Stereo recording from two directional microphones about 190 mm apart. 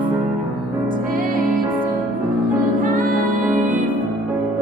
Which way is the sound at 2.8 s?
45° right (ahead or behind).